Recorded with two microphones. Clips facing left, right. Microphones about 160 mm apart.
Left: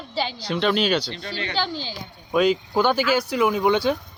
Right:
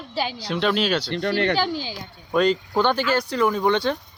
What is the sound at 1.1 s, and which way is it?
Speech, 65° right (ahead or behind).